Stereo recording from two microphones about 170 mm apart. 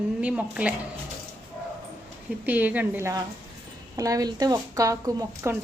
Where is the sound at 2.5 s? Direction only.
10° right (ahead or behind).